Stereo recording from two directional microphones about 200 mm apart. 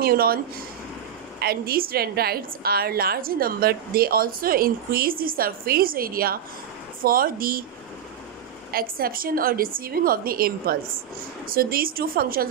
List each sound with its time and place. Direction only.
0.0 s a woman's voice: 50° right (ahead or behind)
1.4 s a woman's voice: 50° right (ahead or behind)
8.7 s a woman's voice: 45° right (ahead or behind)